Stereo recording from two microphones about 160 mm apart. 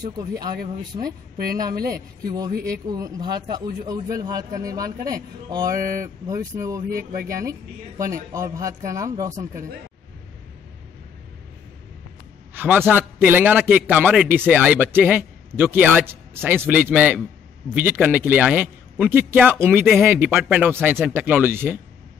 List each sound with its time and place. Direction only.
1.0 s a woman's voice: 70° right (ahead or behind)
2.0 s speech: 25° right (ahead or behind)
8.0 s speech: 20° right (ahead or behind)
12.5 s a sound: 10° right (ahead or behind)
12.9 s a man's voice: 10° right (ahead or behind)